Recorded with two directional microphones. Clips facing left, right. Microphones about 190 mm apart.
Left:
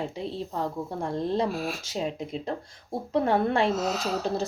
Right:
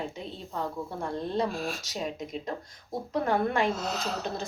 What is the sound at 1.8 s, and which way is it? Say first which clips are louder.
Speech: left 3 dB; 30° left (ahead or behind).